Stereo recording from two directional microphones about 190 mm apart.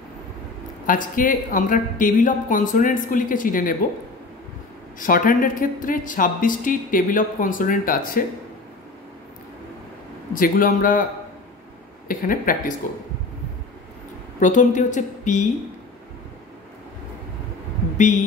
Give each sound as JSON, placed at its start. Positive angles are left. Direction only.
{"t": 0.8, "sound": "a woman's voice", "side_deg": 45}
{"t": 4.9, "sound": "a woman's voice", "side_deg": 45}
{"t": 10.3, "sound": "a woman's voice", "side_deg": 45}
{"t": 12.1, "sound": "a woman's voice", "side_deg": 45}
{"t": 14.4, "sound": "a woman's voice", "side_deg": 40}